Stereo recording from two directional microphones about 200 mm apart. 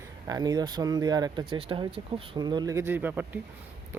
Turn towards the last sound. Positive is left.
turn(degrees=-10)  # may be behind; listen again after turning